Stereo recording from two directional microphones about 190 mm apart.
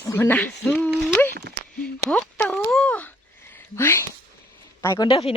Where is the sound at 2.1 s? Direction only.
5° left (ahead or behind).